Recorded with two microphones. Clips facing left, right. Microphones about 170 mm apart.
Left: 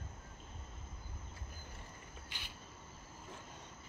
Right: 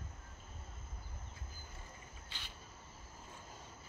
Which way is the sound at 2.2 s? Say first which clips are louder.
Even; 10° left (ahead or behind).